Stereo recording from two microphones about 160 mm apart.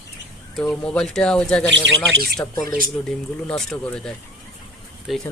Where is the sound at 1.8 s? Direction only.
85° right.